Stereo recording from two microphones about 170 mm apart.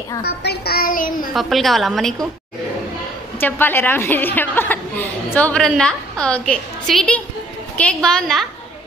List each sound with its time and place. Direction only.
0.2 s a child's voice: 70° left (ahead or behind)
1.3 s a woman's voice: centre (ahead or behind)
3.3 s a woman's voice: 10° left (ahead or behind)